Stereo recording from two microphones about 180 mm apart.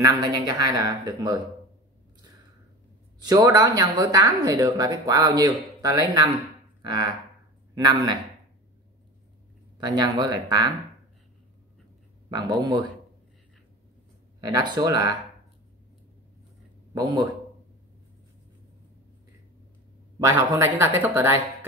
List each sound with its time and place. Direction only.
0.0 s speech: 20° right (ahead or behind)
3.2 s speech: 20° right (ahead or behind)
9.8 s speech: 25° right (ahead or behind)
12.3 s speech: 25° right (ahead or behind)
14.4 s speech: 25° right (ahead or behind)
16.9 s speech: 20° right (ahead or behind)
20.2 s speech: 15° right (ahead or behind)